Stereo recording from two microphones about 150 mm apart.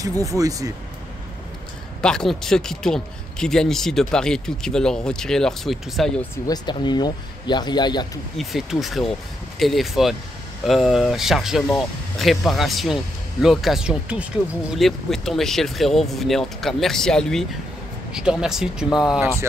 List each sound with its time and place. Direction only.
0.0 s speech: 25° right (ahead or behind)
2.0 s speech: 5° left (ahead or behind)
6.3 s speech: 25° left (ahead or behind)
8.4 s speech: centre (ahead or behind)